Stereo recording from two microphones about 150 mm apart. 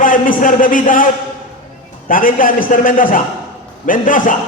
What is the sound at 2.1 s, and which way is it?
A man's voice, 65° left (ahead or behind).